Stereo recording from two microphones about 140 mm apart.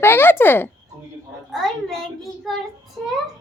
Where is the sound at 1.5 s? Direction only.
Centre (ahead or behind).